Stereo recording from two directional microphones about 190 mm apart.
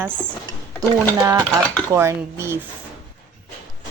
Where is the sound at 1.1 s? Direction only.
15° right (ahead or behind).